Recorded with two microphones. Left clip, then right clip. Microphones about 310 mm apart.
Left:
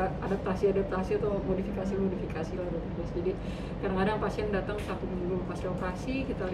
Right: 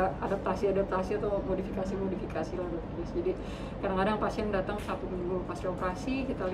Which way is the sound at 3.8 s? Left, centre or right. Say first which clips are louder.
Right 1 dB; centre.